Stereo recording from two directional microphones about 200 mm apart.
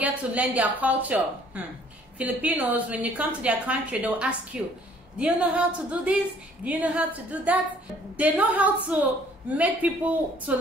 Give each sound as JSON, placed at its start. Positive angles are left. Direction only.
{"t": 0.0, "sound": "a woman's voice", "side_deg": -10}